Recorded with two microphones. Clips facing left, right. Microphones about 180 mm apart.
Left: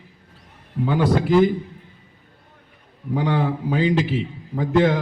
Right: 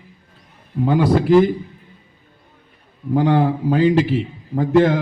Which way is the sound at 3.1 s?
50° right (ahead or behind).